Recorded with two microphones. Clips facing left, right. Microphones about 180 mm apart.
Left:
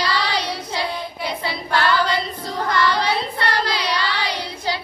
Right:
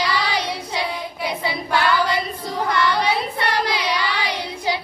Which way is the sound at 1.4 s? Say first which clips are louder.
Even; 10° right (ahead or behind).